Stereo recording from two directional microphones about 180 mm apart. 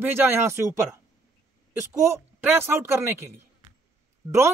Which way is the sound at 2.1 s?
10° right (ahead or behind).